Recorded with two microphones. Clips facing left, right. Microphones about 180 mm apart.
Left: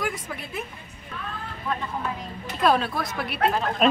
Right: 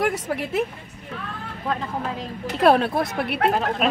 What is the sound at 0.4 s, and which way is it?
Speech, 80° right.